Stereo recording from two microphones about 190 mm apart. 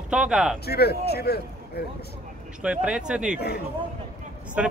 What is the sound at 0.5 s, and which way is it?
Speech, 55° left (ahead or behind).